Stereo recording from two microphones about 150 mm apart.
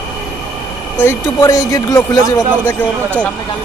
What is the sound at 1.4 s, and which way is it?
Speech, 20° left (ahead or behind).